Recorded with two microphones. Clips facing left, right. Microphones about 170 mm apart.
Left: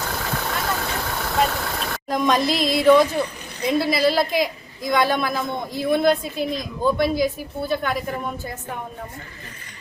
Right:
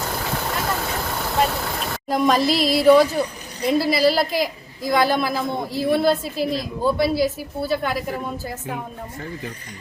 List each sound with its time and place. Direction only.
0.0 s vehicle: 5° right (ahead or behind)
3.7 s a woman's voice: centre (ahead or behind)
6.5 s speech: 35° right (ahead or behind)
6.9 s a woman's voice: 5° right (ahead or behind)